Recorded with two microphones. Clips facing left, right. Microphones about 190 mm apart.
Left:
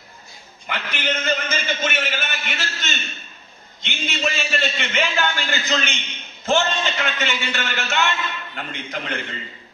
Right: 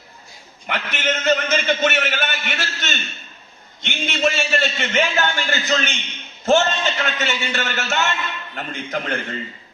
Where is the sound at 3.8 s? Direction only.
50° right (ahead or behind).